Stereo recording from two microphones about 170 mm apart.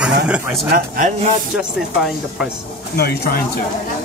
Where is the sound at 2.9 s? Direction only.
65° left (ahead or behind).